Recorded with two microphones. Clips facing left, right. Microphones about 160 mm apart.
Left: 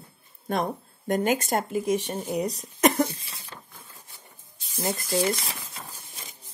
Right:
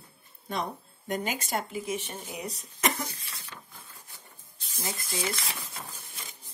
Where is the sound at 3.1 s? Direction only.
25° left (ahead or behind).